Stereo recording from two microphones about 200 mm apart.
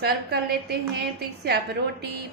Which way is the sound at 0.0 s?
55° right (ahead or behind).